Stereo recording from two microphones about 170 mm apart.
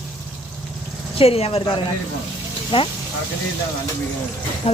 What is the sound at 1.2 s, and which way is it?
Speech, 35° left (ahead or behind).